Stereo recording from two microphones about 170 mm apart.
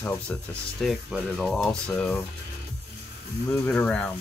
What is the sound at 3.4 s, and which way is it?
Speech, 5° left (ahead or behind).